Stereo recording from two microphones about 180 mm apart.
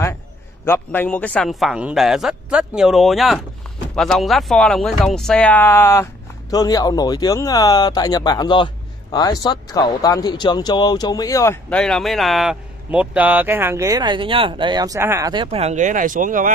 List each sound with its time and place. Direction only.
0.7 s speech: 10° left (ahead or behind)
11.8 s speech: centre (ahead or behind); by 16.5 s 45° right (ahead or behind)